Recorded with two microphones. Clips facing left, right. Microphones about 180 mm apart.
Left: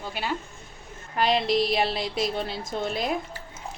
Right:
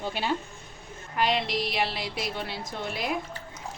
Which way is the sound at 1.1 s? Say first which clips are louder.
Left 4 dB; 35° left (ahead or behind).